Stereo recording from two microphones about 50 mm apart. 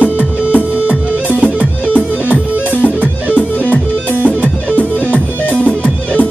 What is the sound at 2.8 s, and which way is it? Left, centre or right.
Music, left.